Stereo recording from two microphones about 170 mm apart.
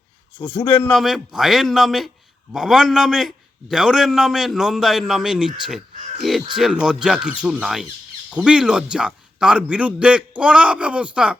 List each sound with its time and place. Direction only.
0.5 s a man's voice: 30° left (ahead or behind)
0.9 s a man's voice: centre (ahead or behind)